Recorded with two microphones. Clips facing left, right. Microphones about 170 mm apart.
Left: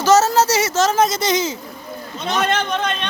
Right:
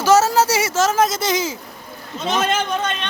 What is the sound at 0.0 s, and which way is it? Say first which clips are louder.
Speech: even; 10° right (ahead or behind).